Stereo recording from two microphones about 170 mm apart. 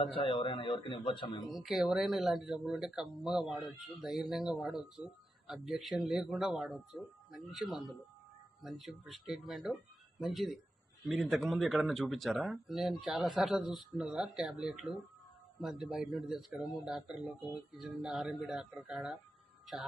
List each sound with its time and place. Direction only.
0.0 s a man's voice: 30° left (ahead or behind)
1.5 s speech: centre (ahead or behind)